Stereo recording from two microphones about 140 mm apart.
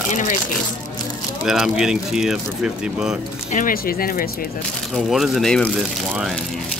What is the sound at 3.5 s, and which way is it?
Speech, 75° left (ahead or behind).